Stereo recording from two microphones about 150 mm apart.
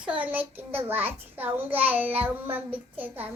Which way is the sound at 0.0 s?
10° right (ahead or behind).